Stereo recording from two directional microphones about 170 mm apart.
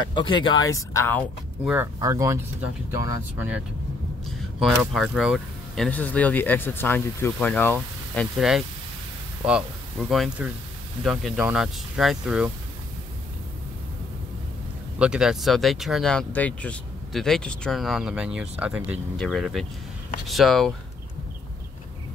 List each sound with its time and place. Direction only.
0.1 s speech: 30° left (ahead or behind)
2.0 s speech: 20° right (ahead or behind)
4.3 s speech: centre (ahead or behind)
8.4 s speech: 5° right (ahead or behind)
15.0 s speech: 5° right (ahead or behind)